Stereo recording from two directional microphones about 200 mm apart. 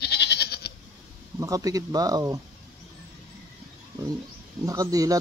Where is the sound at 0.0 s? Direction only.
55° left (ahead or behind).